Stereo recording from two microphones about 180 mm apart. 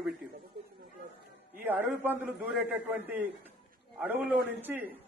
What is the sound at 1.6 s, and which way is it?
A man's voice, 10° right (ahead or behind).